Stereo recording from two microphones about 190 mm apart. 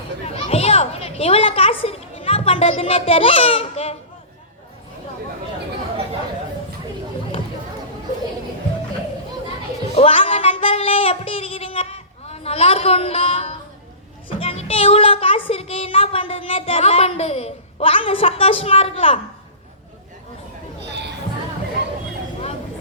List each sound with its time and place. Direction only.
0.3 s children playing: 30° left (ahead or behind)
1.8 s a child's voice: 30° left (ahead or behind)
9.9 s a sound: 30° left (ahead or behind)
14.3 s speech: 30° left (ahead or behind)